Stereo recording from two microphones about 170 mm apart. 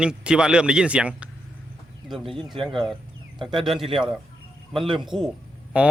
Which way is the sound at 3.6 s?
Centre (ahead or behind).